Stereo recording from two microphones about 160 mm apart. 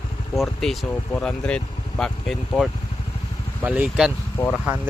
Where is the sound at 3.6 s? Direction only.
10° right (ahead or behind).